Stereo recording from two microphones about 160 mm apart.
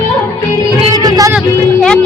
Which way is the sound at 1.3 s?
5° left (ahead or behind).